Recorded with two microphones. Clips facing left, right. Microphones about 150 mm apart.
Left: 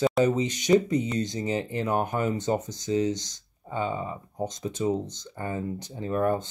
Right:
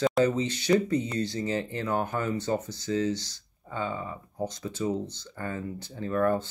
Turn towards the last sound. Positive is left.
turn(degrees=20)  # may be behind; listen again after turning